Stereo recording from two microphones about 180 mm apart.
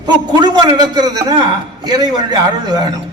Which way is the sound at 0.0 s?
25° right (ahead or behind).